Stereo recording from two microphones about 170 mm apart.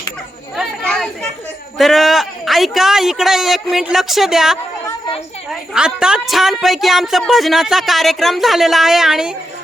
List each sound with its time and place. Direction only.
0.5 s chatter: centre (ahead or behind)
1.8 s a woman's voice: centre (ahead or behind)